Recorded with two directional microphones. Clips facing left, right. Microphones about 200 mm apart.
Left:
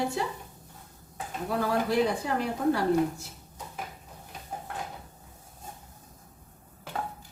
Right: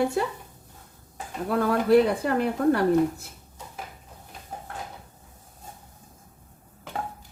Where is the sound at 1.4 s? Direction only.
60° right (ahead or behind).